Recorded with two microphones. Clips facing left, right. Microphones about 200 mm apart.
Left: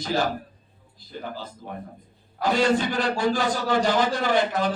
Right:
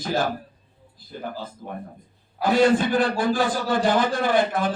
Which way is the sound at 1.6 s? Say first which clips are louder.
Right 2 dB; 50° right (ahead or behind).